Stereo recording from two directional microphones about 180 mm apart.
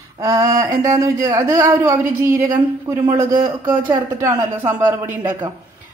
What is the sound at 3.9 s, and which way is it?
Speech, 15° right (ahead or behind).